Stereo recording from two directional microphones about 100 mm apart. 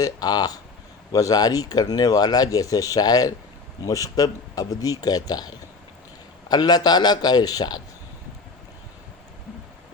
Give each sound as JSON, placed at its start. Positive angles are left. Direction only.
{"t": 0.0, "sound": "a man's voice", "side_deg": 40}